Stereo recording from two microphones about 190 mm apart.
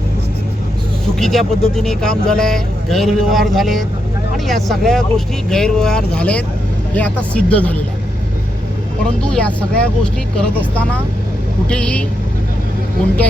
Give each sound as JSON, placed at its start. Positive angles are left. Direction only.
{"t": 1.2, "sound": "speech", "side_deg": 0}
{"t": 9.0, "sound": "speech", "side_deg": 5}
{"t": 11.7, "sound": "speech", "side_deg": 5}